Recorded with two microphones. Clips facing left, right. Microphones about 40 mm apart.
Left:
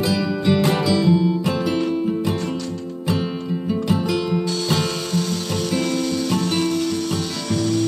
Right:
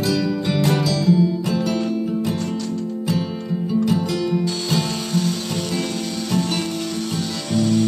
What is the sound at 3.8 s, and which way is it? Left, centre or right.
Music, centre.